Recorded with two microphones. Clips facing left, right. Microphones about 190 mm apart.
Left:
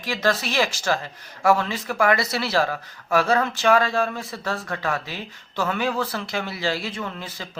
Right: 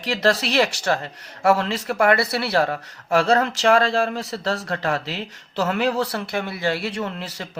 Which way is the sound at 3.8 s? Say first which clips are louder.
Right 2 dB; 35° right (ahead or behind).